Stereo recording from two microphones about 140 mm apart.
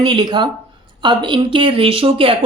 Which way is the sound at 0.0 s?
35° right (ahead or behind).